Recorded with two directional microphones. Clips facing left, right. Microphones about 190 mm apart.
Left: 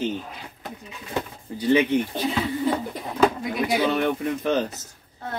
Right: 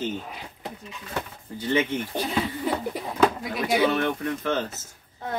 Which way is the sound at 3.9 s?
15° left (ahead or behind).